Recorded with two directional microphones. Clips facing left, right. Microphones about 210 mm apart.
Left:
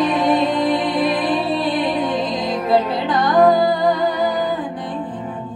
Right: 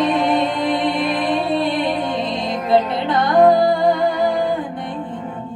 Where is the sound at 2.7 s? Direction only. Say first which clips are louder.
Right 1 dB; 25° right (ahead or behind).